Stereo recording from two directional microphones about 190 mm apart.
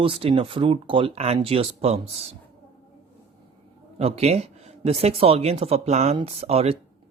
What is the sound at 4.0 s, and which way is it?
Speech, 35° right (ahead or behind).